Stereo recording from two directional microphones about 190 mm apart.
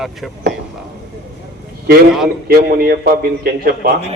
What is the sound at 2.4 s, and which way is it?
Speech, 55° right (ahead or behind).